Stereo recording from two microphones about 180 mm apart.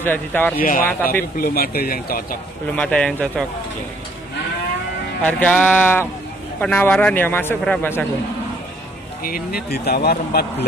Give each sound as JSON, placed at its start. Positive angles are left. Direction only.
{"t": 0.0, "sound": "a man's voice", "side_deg": 10}
{"t": 0.6, "sound": "speech", "side_deg": 50}
{"t": 2.6, "sound": "a man's voice", "side_deg": 5}
{"t": 5.2, "sound": "a man's voice", "side_deg": 5}
{"t": 9.2, "sound": "speech", "side_deg": 55}